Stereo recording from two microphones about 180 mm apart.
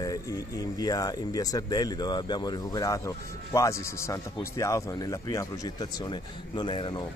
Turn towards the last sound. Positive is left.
turn(degrees=25)  # may be behind; listen again after turning